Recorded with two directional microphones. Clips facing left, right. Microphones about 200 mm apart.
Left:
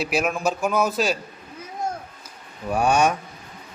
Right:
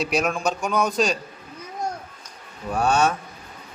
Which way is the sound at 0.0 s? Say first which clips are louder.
Even; 5° left (ahead or behind).